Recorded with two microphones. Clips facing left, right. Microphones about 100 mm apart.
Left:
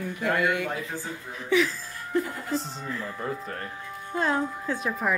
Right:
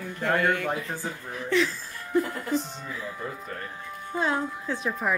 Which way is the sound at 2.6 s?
35° left (ahead or behind).